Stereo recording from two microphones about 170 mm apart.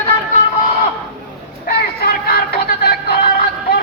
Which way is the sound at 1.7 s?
65° left (ahead or behind).